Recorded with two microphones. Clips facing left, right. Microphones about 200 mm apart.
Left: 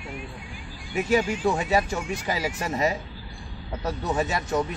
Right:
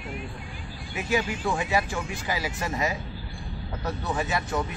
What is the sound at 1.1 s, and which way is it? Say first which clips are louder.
Speech: left 2 dB; 40° left (ahead or behind).